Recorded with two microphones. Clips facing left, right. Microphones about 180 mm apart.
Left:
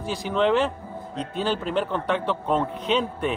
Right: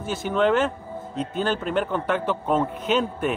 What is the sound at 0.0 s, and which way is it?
A man's voice, centre (ahead or behind).